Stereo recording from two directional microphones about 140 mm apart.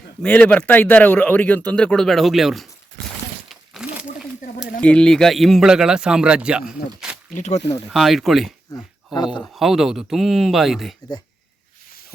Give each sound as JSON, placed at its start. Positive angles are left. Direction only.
{"t": 0.2, "sound": "speech", "side_deg": 10}
{"t": 3.5, "sound": "a sound", "side_deg": -5}
{"t": 4.8, "sound": "a man's voice", "side_deg": 5}
{"t": 7.3, "sound": "speech", "side_deg": 60}
{"t": 7.9, "sound": "a man's voice", "side_deg": 0}